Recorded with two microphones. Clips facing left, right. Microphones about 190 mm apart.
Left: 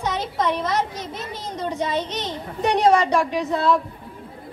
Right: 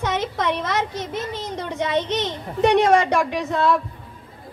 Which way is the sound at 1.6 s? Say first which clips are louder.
Right 1 dB; 60° right (ahead or behind).